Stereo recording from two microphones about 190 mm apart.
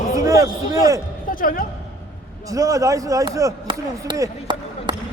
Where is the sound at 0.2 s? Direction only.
15° right (ahead or behind).